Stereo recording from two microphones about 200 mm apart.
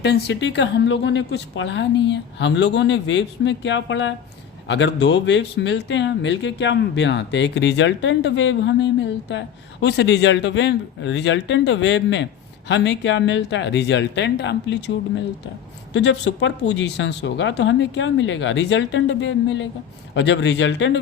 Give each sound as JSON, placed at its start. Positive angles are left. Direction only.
{"t": 0.0, "sound": "speech", "side_deg": 55}